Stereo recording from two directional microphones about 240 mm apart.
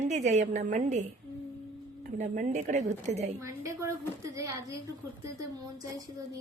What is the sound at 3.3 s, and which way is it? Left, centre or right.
A woman's voice, centre.